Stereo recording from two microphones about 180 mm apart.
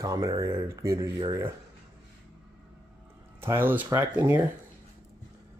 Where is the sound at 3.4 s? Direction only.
10° right (ahead or behind).